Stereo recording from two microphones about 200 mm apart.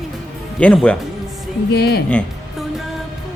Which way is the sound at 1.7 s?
55° left (ahead or behind).